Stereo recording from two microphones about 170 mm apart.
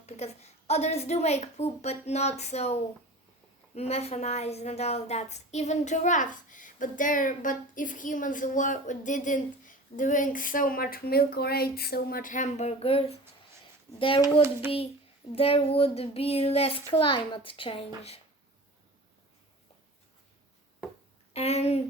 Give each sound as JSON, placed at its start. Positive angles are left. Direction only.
{"t": 0.7, "sound": "a child's voice", "side_deg": 40}
{"t": 3.8, "sound": "a woman's voice", "side_deg": 35}
{"t": 21.3, "sound": "a child's voice", "side_deg": 40}